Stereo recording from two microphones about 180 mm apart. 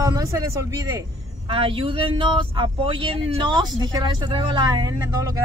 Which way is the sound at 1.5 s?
30° right (ahead or behind).